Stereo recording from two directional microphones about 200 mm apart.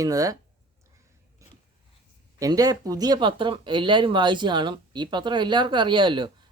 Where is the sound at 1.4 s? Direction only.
15° right (ahead or behind).